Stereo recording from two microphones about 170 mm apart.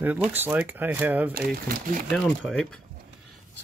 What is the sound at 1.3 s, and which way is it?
Speech, 60° right (ahead or behind).